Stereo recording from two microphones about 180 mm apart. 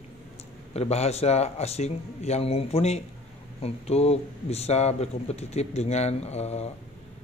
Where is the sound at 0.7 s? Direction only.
35° left (ahead or behind).